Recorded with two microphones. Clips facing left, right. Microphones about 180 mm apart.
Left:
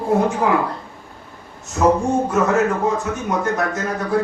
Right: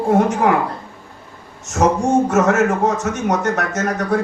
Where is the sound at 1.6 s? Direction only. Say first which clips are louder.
Even; 85° right.